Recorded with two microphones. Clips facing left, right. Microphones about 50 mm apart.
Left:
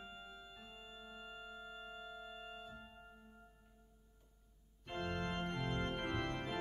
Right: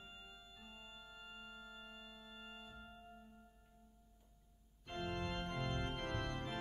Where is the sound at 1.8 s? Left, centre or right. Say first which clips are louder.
Left 5 dB; centre.